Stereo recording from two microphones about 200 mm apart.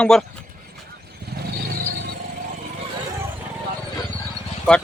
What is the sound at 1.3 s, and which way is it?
Vehicle, 50° right (ahead or behind).